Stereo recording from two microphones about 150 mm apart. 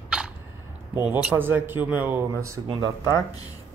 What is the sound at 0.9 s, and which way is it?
Speech, 10° right (ahead or behind).